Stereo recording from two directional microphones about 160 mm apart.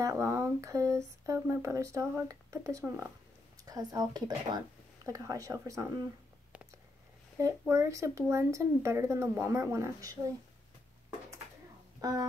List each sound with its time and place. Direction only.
0.0 s speech: 20° right (ahead or behind)
7.4 s speech: 15° right (ahead or behind)
12.0 s a sound: 20° right (ahead or behind)